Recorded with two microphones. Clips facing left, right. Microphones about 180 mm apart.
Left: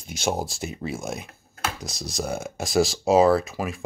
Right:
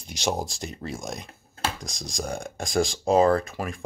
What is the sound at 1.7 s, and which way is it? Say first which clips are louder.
Speech: left 3 dB; 5° left (ahead or behind).